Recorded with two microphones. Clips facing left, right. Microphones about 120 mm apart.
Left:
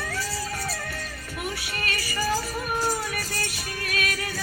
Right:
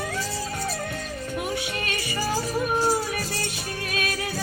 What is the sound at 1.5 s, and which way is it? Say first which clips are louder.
Music: right 3 dB; 25° right (ahead or behind).